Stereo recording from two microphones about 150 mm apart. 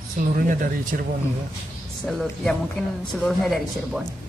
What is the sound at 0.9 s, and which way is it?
Speech, 75° right (ahead or behind).